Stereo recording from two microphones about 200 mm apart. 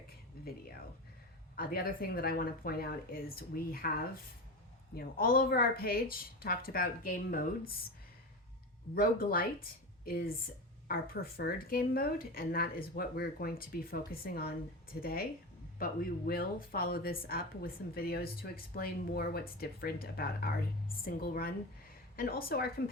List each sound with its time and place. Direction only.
0.4 s a sound: 50° left (ahead or behind)
1.5 s speech: 50° left (ahead or behind)
9.0 s speech: 45° left (ahead or behind)
15.8 s speech: 45° left (ahead or behind)